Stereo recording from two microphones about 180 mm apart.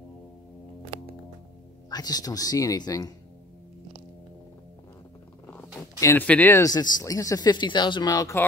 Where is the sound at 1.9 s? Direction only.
20° left (ahead or behind).